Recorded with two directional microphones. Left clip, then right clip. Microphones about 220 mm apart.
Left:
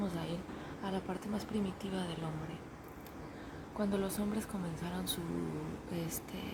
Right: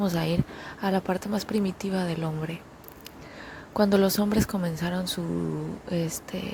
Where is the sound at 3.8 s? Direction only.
40° right (ahead or behind).